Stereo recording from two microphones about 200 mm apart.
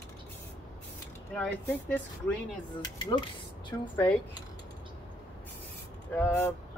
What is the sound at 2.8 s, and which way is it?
Speech, 20° left (ahead or behind).